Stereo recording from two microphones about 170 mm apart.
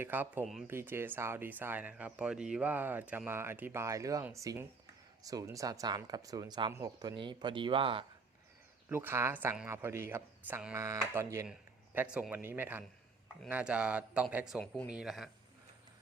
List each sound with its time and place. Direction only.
0.0 s speech: 10° right (ahead or behind); by 8.0 s 30° right (ahead or behind)
8.9 s speech: 15° right (ahead or behind)
11.9 s speech: 5° right (ahead or behind)